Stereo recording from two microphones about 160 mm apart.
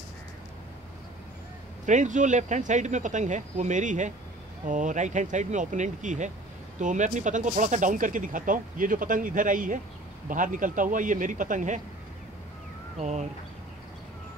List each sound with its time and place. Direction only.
1.9 s speech: 50° right (ahead or behind)
13.0 s speech: 45° right (ahead or behind)